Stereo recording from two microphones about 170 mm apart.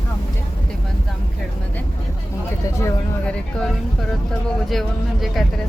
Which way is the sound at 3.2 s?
5° left (ahead or behind).